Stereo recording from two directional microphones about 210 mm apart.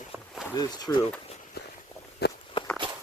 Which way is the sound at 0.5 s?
20° left (ahead or behind).